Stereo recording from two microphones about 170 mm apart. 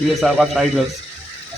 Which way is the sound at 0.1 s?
Centre (ahead or behind).